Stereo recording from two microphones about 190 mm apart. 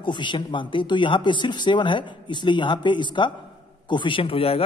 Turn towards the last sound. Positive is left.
turn(degrees=30)  # may be behind; listen again after turning